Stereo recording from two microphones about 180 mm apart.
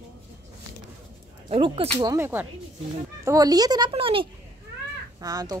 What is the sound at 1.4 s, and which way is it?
Speech, 30° right (ahead or behind).